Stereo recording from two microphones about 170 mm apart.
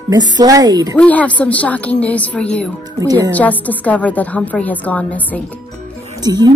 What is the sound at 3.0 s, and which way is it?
Speech, 20° right (ahead or behind).